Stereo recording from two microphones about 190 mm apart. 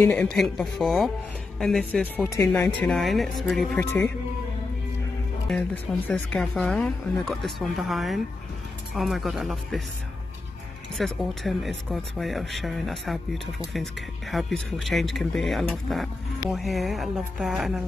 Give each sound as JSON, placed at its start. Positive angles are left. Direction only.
{"t": 0.0, "sound": "speech", "side_deg": 5}
{"t": 2.8, "sound": "speech", "side_deg": 0}
{"t": 5.5, "sound": "speech", "side_deg": 5}
{"t": 11.0, "sound": "speech", "side_deg": 0}